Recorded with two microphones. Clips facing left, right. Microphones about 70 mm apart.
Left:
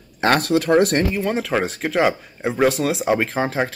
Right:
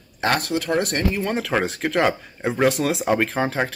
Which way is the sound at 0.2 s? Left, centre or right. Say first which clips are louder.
Left 4 dB; left.